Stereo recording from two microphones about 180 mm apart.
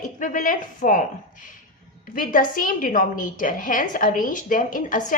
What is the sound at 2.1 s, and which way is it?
Speech, 50° left (ahead or behind).